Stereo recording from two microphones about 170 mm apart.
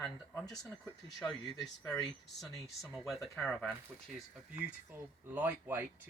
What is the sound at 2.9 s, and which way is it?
Speech, centre (ahead or behind).